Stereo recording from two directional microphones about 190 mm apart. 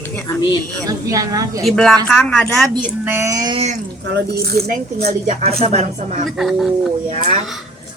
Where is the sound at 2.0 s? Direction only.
5° left (ahead or behind).